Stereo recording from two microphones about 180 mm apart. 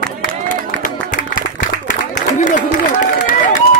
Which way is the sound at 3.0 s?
45° left (ahead or behind).